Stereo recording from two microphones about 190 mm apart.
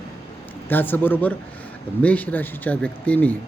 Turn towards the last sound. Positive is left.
turn(degrees=5)  # may be behind; listen again after turning